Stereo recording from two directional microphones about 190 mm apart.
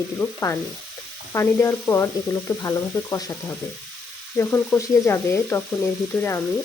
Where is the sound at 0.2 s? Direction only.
15° left (ahead or behind).